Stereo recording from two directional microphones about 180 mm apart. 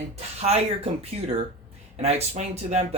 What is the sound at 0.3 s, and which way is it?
Speech, 35° right (ahead or behind).